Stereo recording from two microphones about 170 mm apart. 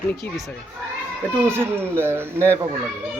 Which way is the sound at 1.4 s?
15° right (ahead or behind).